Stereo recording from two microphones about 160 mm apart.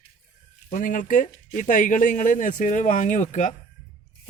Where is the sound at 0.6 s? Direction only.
55° left (ahead or behind).